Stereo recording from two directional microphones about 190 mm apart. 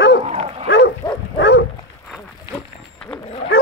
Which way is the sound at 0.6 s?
65° left (ahead or behind).